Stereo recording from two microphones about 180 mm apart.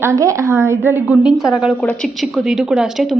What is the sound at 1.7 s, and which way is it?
A woman's voice, 5° left (ahead or behind).